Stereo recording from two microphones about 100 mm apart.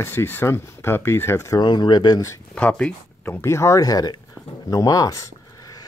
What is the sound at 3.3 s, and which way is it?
Speech, 30° left (ahead or behind).